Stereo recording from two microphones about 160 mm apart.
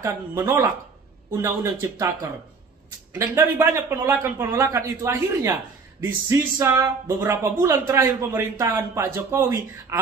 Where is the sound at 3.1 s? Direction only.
15° right (ahead or behind).